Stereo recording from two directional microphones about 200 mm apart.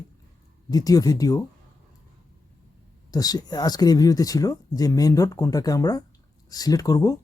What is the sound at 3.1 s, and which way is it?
Speech, 20° left (ahead or behind).